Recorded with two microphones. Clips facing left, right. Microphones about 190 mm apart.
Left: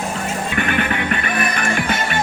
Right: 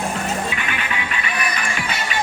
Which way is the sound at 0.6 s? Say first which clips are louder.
Left 7 dB; 55° left (ahead or behind).